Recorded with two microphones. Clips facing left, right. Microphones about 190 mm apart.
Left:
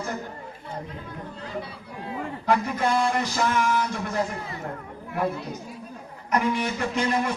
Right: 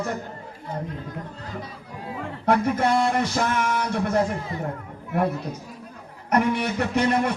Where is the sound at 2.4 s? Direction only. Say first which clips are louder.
Right 3 dB; 65° right (ahead or behind).